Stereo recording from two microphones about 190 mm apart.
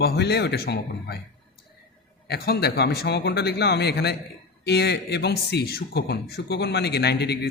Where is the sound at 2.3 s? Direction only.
55° left (ahead or behind).